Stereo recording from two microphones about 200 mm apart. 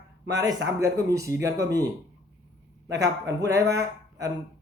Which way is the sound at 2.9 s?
15° right (ahead or behind).